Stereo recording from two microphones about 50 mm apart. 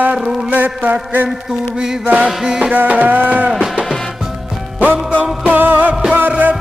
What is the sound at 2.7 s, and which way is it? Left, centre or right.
Speech, right.